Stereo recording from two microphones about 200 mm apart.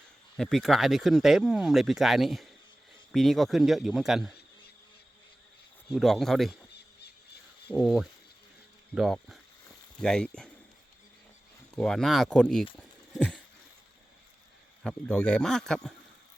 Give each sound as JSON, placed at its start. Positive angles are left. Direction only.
{"t": 0.3, "sound": "speech", "side_deg": 0}
{"t": 5.9, "sound": "speech", "side_deg": 0}
{"t": 7.7, "sound": "speech", "side_deg": 0}
{"t": 11.8, "sound": "speech", "side_deg": 0}
{"t": 13.1, "sound": "a sound", "side_deg": 5}
{"t": 14.8, "sound": "speech", "side_deg": 5}